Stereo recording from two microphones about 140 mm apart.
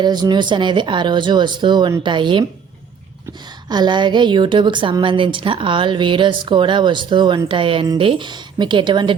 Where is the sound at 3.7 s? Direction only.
30° right (ahead or behind).